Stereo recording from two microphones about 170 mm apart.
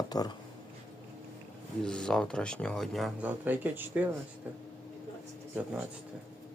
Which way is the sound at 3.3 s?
10° right (ahead or behind).